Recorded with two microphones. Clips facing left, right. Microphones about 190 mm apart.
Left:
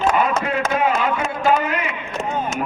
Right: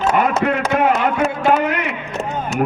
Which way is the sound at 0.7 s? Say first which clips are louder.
Right 4 dB; 60° right (ahead or behind).